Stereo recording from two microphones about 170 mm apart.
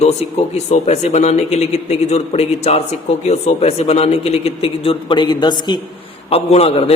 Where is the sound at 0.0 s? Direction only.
40° left (ahead or behind).